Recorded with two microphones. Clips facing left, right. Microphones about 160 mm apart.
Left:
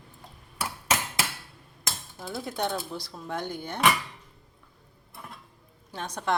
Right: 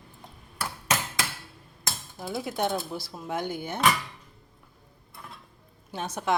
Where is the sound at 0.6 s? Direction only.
10° left (ahead or behind).